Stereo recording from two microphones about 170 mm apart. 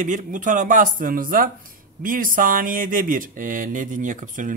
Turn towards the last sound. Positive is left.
turn(degrees=-50)  # may be behind; listen again after turning